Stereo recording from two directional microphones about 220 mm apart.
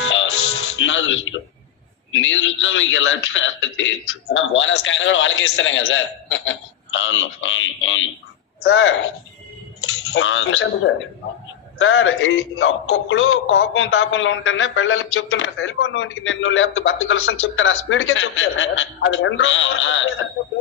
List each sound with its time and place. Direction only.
0.0 s music: 60° left (ahead or behind)
2.1 s speech: 60° left (ahead or behind)
11.8 s speech: 60° left (ahead or behind)